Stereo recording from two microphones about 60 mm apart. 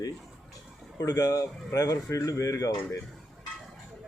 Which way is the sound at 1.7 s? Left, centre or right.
Left.